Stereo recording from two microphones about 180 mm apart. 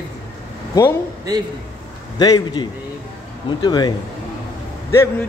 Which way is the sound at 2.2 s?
20° left (ahead or behind).